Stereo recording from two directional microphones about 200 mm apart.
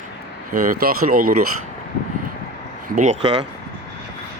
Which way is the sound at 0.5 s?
45° right (ahead or behind).